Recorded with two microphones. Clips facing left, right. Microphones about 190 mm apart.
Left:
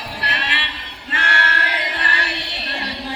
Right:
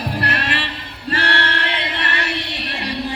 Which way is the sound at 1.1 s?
35° right (ahead or behind).